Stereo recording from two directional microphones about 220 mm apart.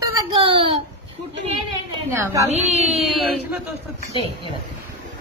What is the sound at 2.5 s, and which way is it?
Speech, 30° right (ahead or behind).